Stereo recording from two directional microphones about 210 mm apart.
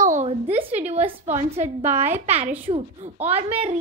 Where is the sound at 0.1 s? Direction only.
30° right (ahead or behind).